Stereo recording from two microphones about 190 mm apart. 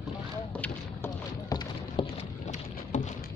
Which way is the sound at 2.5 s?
40° left (ahead or behind).